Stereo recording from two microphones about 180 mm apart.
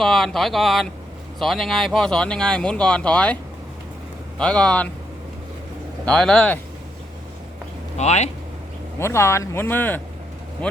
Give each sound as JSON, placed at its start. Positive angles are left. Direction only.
{"t": 0.0, "sound": "speech", "side_deg": 0}
{"t": 4.4, "sound": "speech", "side_deg": 5}
{"t": 6.1, "sound": "speech", "side_deg": 5}
{"t": 7.9, "sound": "speech", "side_deg": 40}
{"t": 9.0, "sound": "speech", "side_deg": 15}